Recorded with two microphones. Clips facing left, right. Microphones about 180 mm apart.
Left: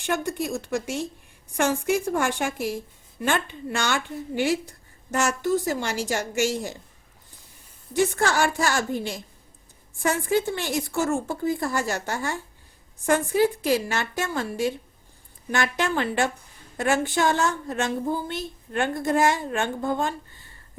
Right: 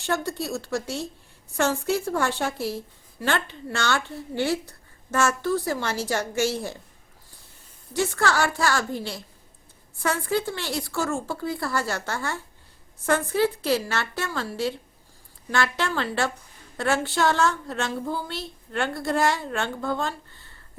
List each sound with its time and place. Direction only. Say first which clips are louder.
0.0 s speech: left 1 dB; 15° left (ahead or behind)
7.9 s a woman's voice: left 2 dB; 20° left (ahead or behind)